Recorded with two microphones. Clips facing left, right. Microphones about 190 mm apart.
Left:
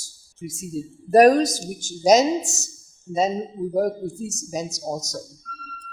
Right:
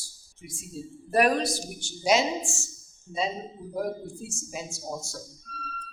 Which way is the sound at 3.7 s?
45° left (ahead or behind).